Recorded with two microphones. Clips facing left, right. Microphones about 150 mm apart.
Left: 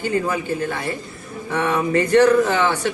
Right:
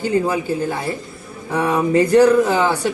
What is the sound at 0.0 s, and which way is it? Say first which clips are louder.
Speech: right 3 dB; 10° right (ahead or behind).